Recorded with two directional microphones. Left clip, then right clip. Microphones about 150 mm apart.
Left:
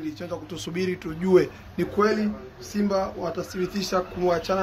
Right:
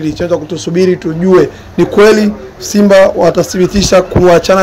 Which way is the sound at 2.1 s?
30° right (ahead or behind).